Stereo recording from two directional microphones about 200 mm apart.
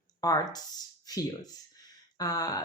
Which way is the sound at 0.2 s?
20° left (ahead or behind).